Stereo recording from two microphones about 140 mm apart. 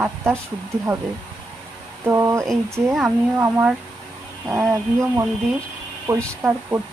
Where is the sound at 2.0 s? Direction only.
20° right (ahead or behind).